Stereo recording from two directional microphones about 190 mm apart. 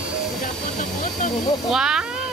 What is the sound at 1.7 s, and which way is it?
Speech, 5° right (ahead or behind).